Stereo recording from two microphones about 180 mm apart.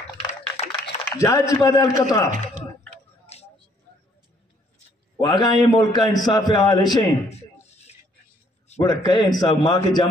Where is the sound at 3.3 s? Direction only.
35° left (ahead or behind).